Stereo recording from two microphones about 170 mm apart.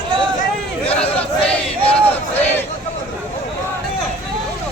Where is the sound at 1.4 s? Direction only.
5° left (ahead or behind).